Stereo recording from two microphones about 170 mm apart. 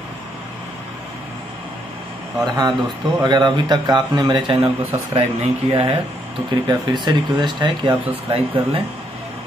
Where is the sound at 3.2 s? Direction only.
25° right (ahead or behind).